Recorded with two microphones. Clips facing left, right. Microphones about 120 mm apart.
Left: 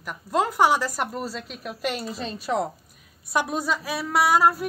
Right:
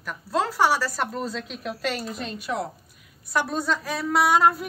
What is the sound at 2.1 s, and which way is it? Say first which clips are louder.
Speech: left 3 dB; 35° left (ahead or behind).